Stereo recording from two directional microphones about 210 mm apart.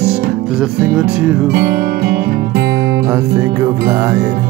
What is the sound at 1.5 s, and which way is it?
Music, 45° right (ahead or behind).